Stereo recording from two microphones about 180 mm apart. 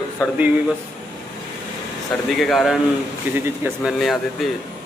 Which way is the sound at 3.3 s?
10° right (ahead or behind).